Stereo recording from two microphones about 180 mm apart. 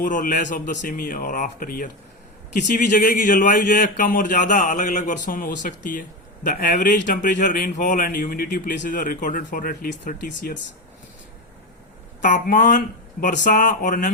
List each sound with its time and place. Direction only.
0.0 s speech: 45° left (ahead or behind)
12.2 s speech: 45° left (ahead or behind)